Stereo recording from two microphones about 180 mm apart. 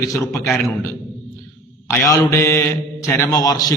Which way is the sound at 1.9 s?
10° left (ahead or behind).